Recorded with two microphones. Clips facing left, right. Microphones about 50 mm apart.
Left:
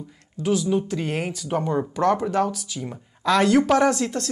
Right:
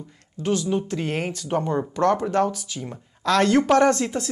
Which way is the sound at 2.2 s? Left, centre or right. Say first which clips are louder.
Right 1 dB; centre.